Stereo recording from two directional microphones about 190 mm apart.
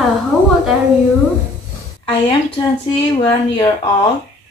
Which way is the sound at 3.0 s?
25° left (ahead or behind).